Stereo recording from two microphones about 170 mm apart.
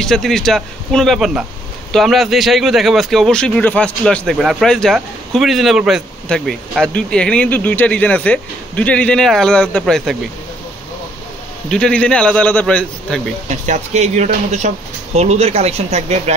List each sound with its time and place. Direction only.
0.0 s speech: 5° left (ahead or behind)
11.7 s a man's voice: 5° left (ahead or behind)
13.5 s speech: 45° right (ahead or behind)